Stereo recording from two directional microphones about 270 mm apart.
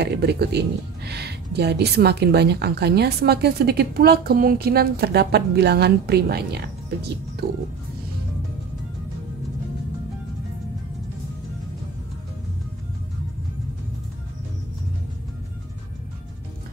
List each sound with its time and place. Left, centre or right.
0.0 s speech: right